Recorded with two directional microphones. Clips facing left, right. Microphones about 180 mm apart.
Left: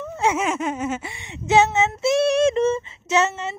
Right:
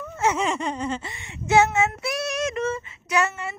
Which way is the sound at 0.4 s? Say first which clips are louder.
Left 2 dB; 5° left (ahead or behind).